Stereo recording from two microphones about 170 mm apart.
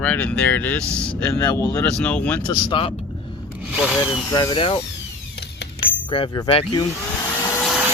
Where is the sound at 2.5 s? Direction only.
30° left (ahead or behind).